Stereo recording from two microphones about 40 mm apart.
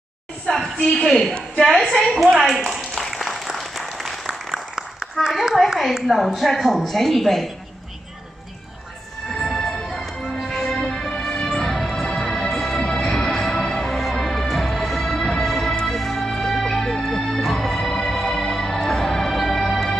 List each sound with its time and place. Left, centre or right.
0.9 s a man's voice: centre
2.7 s applause: centre
5.2 s a woman's voice: centre
5.7 s a woman's voice: centre
9.3 s music: centre
11.1 s music: left
11.5 s music: centre